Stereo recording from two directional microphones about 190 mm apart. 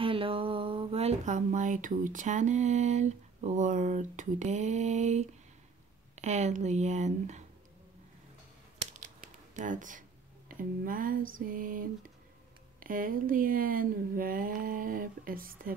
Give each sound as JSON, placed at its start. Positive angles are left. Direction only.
{"t": 0.0, "sound": "speech", "side_deg": -30}
{"t": 8.9, "sound": "a sound", "side_deg": -40}
{"t": 10.5, "sound": "speech", "side_deg": -45}